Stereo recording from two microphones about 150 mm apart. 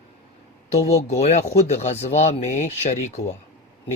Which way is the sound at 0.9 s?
45° left (ahead or behind).